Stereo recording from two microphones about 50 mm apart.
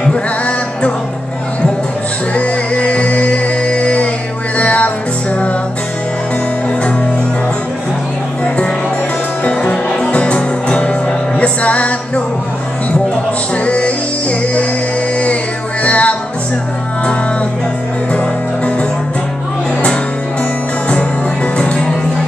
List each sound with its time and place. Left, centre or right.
0.0 s music: left
2.3 s music: left
9.4 s music: left
13.7 s music: left
15.8 s music: left
21.5 s music: left